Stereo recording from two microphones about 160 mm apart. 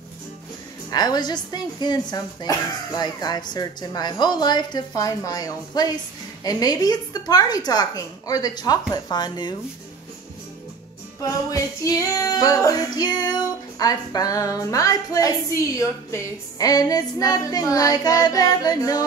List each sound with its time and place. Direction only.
0.8 s female singing: 25° left (ahead or behind)
11.2 s female singing: 20° left (ahead or behind)